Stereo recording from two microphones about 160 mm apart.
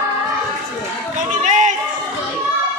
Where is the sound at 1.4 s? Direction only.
50° right (ahead or behind).